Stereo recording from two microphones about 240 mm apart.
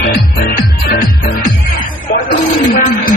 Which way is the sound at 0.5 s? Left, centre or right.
Left.